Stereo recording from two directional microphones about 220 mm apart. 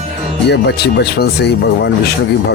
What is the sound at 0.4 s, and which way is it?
Speech, 50° left (ahead or behind).